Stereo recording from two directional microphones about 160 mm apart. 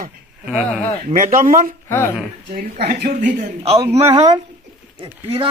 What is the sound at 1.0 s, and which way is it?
Speech, 55° right (ahead or behind).